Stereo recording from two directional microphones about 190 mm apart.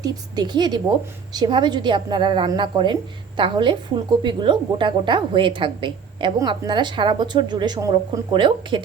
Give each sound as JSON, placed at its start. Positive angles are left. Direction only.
{"t": 0.0, "sound": "a woman's voice", "side_deg": -20}